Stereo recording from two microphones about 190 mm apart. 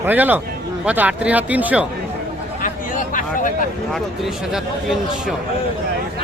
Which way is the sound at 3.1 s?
45° left (ahead or behind).